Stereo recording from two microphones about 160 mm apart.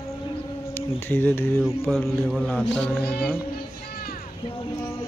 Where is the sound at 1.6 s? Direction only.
Centre (ahead or behind).